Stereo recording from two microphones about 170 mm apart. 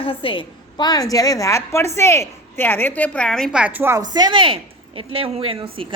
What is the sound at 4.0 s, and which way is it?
A woman's voice, 25° right (ahead or behind).